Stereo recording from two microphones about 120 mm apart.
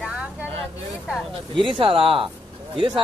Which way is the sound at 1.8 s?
50° right (ahead or behind).